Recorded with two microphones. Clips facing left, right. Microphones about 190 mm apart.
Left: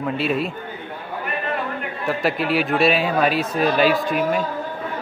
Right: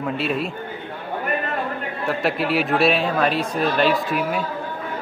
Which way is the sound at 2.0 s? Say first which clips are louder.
Left 1 dB; centre (ahead or behind).